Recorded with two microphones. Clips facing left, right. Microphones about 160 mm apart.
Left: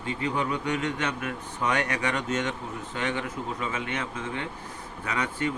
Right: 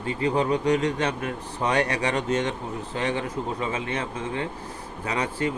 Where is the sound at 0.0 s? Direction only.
35° right (ahead or behind).